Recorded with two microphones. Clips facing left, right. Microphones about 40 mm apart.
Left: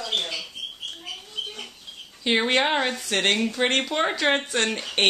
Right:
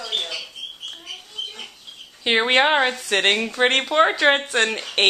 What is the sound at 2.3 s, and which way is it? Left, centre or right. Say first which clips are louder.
Speech: right 4 dB; right.